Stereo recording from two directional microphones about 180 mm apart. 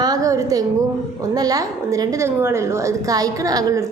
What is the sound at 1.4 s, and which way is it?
A woman's voice, 20° right (ahead or behind).